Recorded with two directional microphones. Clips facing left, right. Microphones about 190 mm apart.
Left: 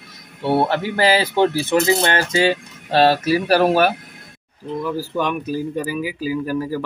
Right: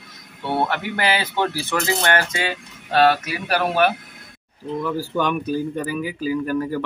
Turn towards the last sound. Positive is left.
turn(degrees=5)  # may be behind; listen again after turning